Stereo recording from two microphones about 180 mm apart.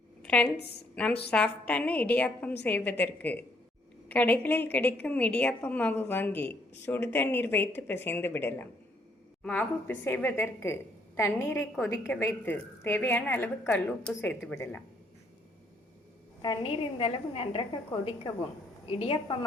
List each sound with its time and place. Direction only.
0.2 s a sound: 5° left (ahead or behind)
0.5 s a woman's voice: 65° left (ahead or behind)
0.9 s a woman's voice: 5° left (ahead or behind)
16.4 s a woman's voice: 25° left (ahead or behind)